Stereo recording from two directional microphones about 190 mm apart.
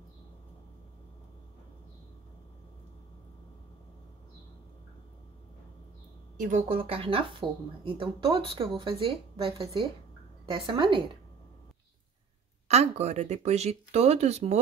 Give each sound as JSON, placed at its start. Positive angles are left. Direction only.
{"t": 6.3, "sound": "speech", "side_deg": -45}
{"t": 6.7, "sound": "speech", "side_deg": -30}
{"t": 12.6, "sound": "speech", "side_deg": -35}